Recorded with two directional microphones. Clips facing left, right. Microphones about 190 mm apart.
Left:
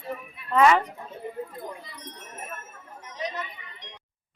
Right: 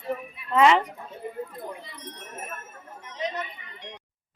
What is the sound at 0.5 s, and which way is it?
Speech, 15° right (ahead or behind).